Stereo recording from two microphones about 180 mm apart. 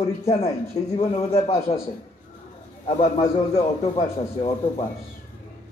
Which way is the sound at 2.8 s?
35° left (ahead or behind).